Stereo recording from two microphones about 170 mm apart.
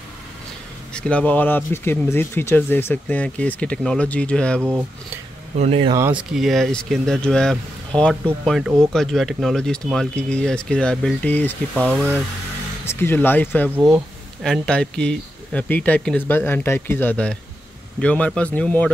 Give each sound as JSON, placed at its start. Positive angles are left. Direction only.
{"t": 0.9, "sound": "speech", "side_deg": 5}
{"t": 5.6, "sound": "speech", "side_deg": -35}
{"t": 5.9, "sound": "speech", "side_deg": -15}
{"t": 6.3, "sound": "speech", "side_deg": 0}
{"t": 12.8, "sound": "speech", "side_deg": 15}